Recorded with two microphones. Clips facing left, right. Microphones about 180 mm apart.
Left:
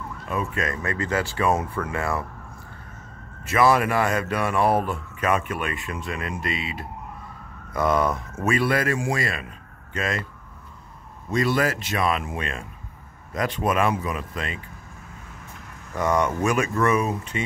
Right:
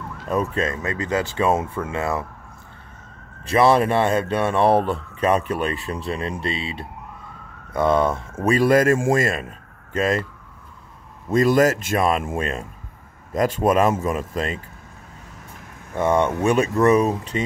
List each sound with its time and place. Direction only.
0.3 s speech: 35° right (ahead or behind)
3.4 s speech: 30° right (ahead or behind)
11.2 s speech: 45° right (ahead or behind)
15.9 s speech: 25° right (ahead or behind)